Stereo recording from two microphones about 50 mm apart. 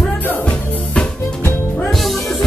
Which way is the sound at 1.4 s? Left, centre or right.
Left.